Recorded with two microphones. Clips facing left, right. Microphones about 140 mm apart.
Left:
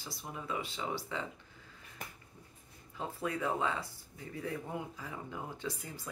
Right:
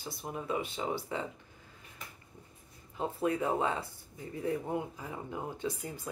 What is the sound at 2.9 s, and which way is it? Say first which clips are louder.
Speech: right 6 dB; 20° right (ahead or behind).